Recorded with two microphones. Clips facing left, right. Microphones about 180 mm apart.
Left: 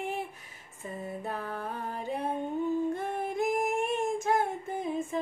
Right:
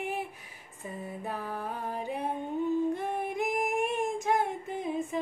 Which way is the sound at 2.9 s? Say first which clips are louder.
Even; 15° right (ahead or behind).